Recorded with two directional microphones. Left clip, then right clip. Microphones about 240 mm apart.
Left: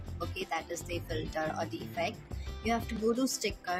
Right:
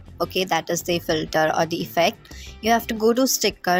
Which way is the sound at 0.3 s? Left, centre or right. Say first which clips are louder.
Right 14 dB; right.